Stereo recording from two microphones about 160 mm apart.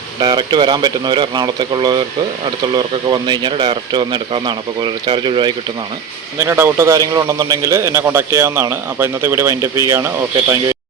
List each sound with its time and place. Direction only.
0.2 s speech: 25° right (ahead or behind)
6.4 s a man's voice: 15° right (ahead or behind)